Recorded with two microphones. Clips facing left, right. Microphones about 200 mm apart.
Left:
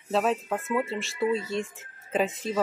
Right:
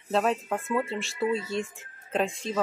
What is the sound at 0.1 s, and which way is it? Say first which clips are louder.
Speech: even; centre (ahead or behind).